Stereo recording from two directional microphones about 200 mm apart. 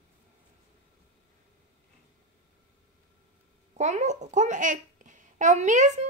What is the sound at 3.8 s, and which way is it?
A child's voice, 35° right (ahead or behind).